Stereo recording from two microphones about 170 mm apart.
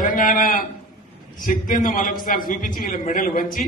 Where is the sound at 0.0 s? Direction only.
55° left (ahead or behind).